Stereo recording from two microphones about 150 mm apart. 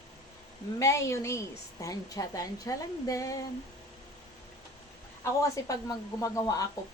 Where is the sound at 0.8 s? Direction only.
20° left (ahead or behind).